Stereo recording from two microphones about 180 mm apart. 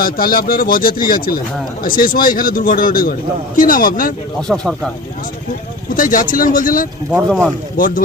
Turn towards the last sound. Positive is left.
turn(degrees=50)  # may be behind; listen again after turning